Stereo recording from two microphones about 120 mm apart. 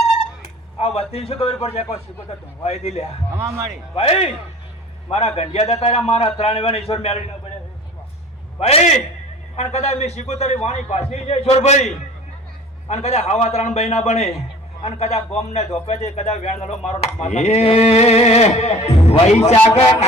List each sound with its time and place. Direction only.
0.8 s a sound: 55° left (ahead or behind)
1.1 s a man's voice: 60° left (ahead or behind)
8.5 s a man's voice: 60° left (ahead or behind)
12.9 s a man's voice: 65° left (ahead or behind)